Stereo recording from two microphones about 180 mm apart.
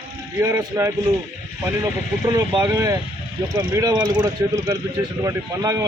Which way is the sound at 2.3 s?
15° right (ahead or behind).